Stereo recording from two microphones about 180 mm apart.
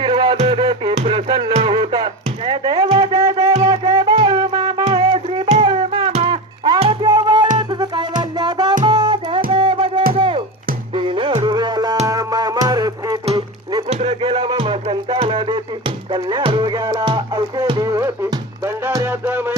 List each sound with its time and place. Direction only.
0.0 s music: 25° right (ahead or behind)
2.5 s a sound: 20° right (ahead or behind)
2.9 s music: 20° right (ahead or behind)
5.1 s music: 35° right (ahead or behind)
14.0 s music: 30° right (ahead or behind); by 19.5 s 10° right (ahead or behind)